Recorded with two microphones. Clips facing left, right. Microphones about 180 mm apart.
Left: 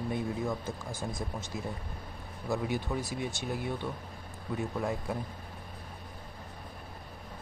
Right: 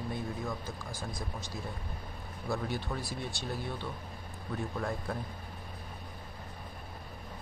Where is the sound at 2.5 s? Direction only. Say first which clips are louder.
Left 3 dB; 15° left (ahead or behind).